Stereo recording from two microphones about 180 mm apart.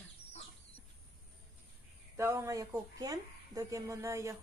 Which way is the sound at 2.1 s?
15° right (ahead or behind).